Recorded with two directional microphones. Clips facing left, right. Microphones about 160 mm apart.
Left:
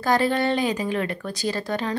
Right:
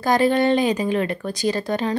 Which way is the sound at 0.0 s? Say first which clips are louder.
Right 4 dB; 15° right (ahead or behind).